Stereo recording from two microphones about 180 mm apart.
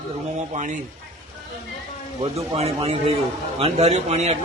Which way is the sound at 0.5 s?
45° right (ahead or behind).